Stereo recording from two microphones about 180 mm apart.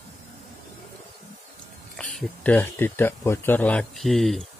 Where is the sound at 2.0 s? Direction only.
5° left (ahead or behind).